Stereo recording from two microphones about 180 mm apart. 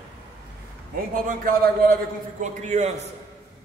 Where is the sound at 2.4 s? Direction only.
40° right (ahead or behind).